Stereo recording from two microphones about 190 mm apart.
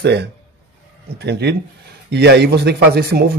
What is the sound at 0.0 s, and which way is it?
Speech, 60° right (ahead or behind).